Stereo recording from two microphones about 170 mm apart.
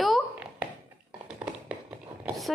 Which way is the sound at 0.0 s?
5° right (ahead or behind).